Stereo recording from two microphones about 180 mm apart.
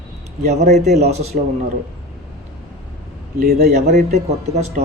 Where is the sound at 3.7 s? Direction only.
40° right (ahead or behind).